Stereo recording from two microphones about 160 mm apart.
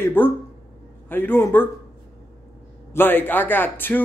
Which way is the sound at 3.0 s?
10° left (ahead or behind).